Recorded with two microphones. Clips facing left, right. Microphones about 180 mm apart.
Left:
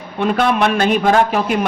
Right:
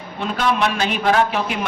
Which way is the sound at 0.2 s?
55° left (ahead or behind).